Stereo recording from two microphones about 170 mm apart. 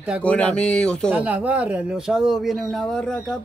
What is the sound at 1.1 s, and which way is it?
Speech, 10° right (ahead or behind).